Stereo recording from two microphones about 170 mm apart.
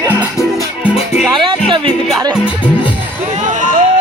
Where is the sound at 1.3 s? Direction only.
30° right (ahead or behind).